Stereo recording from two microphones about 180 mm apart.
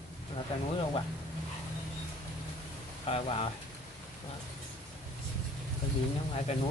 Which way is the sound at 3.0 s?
35° left (ahead or behind).